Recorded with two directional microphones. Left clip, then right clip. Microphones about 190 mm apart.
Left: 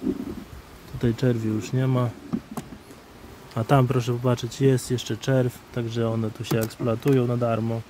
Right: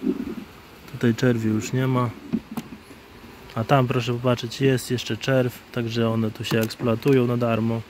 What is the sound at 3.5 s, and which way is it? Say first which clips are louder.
Speech: right 1 dB; 20° left (ahead or behind).